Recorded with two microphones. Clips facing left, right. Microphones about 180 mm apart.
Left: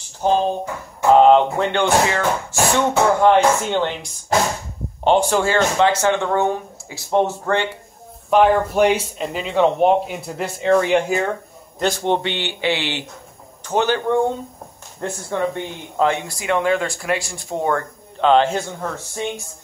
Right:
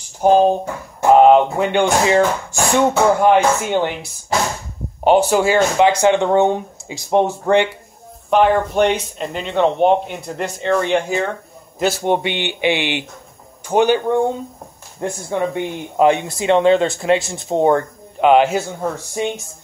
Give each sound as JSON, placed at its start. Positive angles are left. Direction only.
{"t": 0.2, "sound": "speech", "side_deg": -15}
{"t": 8.3, "sound": "speech", "side_deg": 5}
{"t": 11.8, "sound": "speech", "side_deg": -10}